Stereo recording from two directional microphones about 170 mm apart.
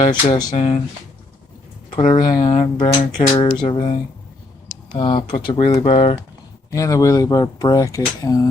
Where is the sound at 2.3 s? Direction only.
35° left (ahead or behind).